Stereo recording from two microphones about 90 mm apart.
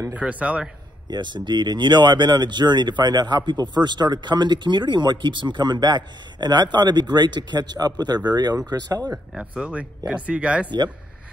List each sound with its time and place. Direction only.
0.1 s speech: 15° right (ahead or behind)
1.1 s speech: 60° right (ahead or behind)
9.3 s speech: 10° right (ahead or behind)